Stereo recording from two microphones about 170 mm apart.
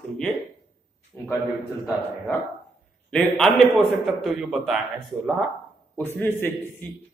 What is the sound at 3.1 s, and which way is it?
A man's voice, centre (ahead or behind).